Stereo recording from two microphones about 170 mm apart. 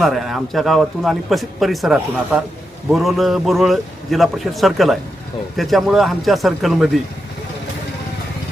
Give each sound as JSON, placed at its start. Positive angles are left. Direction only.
{"t": 0.0, "sound": "speech", "side_deg": 0}